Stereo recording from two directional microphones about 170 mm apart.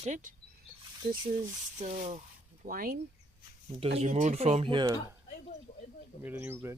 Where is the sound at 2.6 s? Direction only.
55° right (ahead or behind).